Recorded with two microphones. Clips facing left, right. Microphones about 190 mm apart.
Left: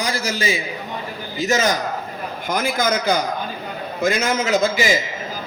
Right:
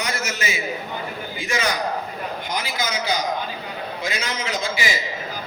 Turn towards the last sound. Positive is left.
turn(degrees=45)  # may be behind; listen again after turning